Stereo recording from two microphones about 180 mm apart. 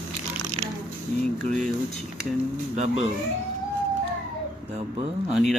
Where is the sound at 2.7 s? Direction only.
40° right (ahead or behind).